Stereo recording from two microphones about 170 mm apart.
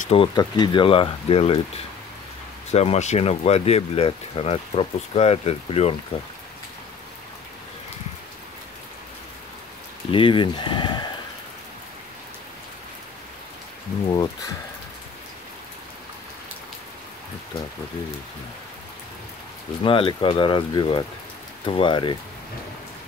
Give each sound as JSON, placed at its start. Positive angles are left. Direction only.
{"t": 0.1, "sound": "speech", "side_deg": 30}
{"t": 2.7, "sound": "speech", "side_deg": 40}
{"t": 10.1, "sound": "speech", "side_deg": 30}
{"t": 14.0, "sound": "speech", "side_deg": 25}
{"t": 19.8, "sound": "speech", "side_deg": 30}